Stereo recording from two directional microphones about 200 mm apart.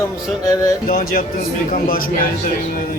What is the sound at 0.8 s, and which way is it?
A man's voice, 50° left (ahead or behind).